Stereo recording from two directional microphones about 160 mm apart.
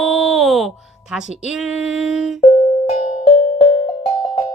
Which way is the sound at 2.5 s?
40° left (ahead or behind).